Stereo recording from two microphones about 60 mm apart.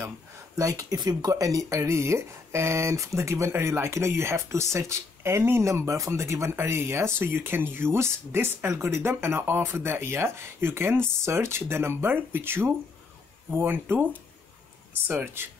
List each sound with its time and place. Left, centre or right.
0.6 s speech: right
5.7 s speech: right
15.0 s speech: right